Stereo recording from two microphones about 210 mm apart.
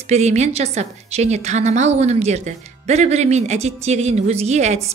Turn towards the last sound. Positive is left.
turn(degrees=-35)  # may be behind; listen again after turning